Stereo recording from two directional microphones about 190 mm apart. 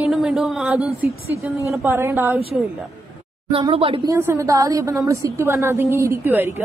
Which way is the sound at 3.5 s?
30° right (ahead or behind).